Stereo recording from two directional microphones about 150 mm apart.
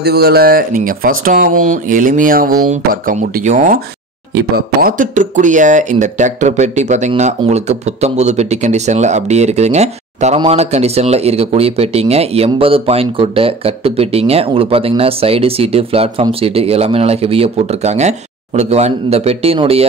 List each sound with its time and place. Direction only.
0.0 s speech: 90° right
3.4 s speech: 60° right (ahead or behind)
4.6 s speech: 70° right (ahead or behind); by 19.9 s 40° right (ahead or behind)